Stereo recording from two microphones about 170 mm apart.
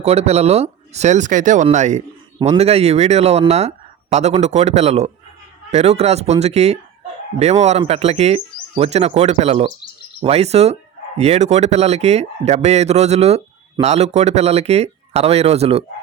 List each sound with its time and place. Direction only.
0.0 s speech: 40° right (ahead or behind)